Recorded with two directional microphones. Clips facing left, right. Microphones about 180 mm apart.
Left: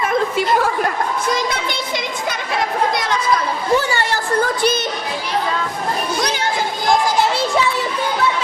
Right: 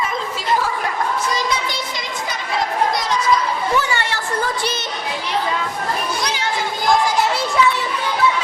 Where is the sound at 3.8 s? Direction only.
35° left (ahead or behind).